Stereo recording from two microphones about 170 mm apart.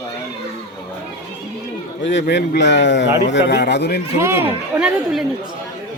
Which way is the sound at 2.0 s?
90° left.